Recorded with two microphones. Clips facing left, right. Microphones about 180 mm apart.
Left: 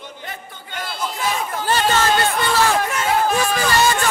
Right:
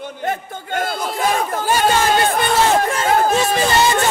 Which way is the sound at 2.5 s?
20° right (ahead or behind).